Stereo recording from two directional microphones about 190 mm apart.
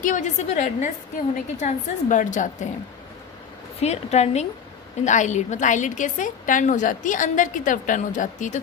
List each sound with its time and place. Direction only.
0.0 s a woman's voice: 40° left (ahead or behind)
3.8 s a woman's voice: 35° left (ahead or behind)